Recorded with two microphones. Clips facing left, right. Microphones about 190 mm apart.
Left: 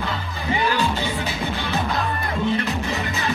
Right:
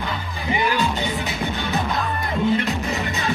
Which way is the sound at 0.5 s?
15° right (ahead or behind).